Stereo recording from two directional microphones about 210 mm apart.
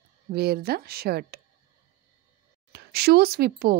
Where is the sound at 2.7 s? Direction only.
50° right (ahead or behind).